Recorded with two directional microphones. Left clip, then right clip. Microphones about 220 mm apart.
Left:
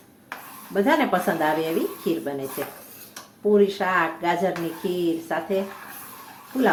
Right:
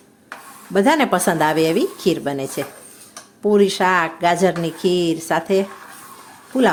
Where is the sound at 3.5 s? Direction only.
55° right (ahead or behind).